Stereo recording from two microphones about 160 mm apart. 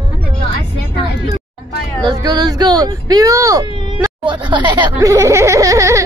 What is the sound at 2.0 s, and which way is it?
Speech, 25° right (ahead or behind).